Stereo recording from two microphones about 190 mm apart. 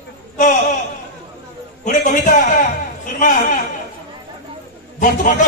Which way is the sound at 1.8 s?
45° left (ahead or behind).